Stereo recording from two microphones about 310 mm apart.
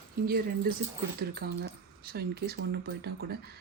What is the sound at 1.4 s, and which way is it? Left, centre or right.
Speech, right.